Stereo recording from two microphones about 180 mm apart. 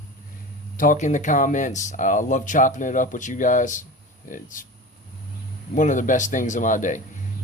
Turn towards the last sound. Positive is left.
turn(degrees=45)  # may be behind; listen again after turning